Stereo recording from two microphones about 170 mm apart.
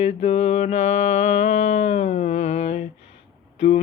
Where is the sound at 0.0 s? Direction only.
40° left (ahead or behind).